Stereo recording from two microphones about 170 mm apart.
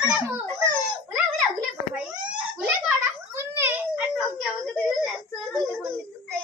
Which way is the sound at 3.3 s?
15° right (ahead or behind).